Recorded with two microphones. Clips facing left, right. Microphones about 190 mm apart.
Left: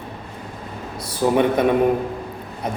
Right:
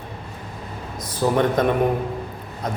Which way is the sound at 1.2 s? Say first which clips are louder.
Left 2 dB; 15° left (ahead or behind).